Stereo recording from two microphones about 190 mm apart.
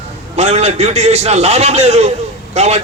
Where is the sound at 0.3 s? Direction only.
35° right (ahead or behind).